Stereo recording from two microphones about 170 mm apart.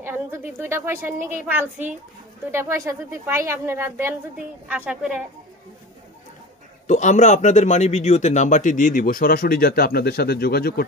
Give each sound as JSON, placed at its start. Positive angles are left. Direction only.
{"t": 0.0, "sound": "a woman's voice", "side_deg": -15}
{"t": 6.9, "sound": "a man's voice", "side_deg": 45}